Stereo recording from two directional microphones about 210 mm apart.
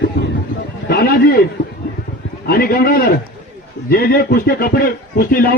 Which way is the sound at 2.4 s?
45° left (ahead or behind).